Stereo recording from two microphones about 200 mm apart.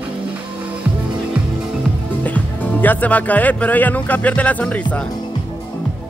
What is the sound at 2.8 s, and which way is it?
Speech, 10° left (ahead or behind).